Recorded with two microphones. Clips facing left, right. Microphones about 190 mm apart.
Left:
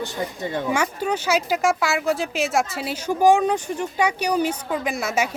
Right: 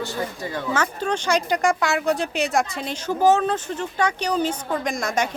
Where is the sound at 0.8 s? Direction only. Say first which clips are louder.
Left 1 dB; 10° left (ahead or behind).